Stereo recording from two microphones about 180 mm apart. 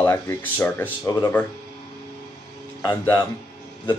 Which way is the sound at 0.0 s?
15° left (ahead or behind).